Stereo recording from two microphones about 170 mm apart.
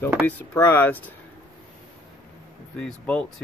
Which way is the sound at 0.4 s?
15° left (ahead or behind).